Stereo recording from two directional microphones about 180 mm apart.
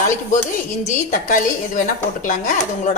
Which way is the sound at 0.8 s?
45° left (ahead or behind).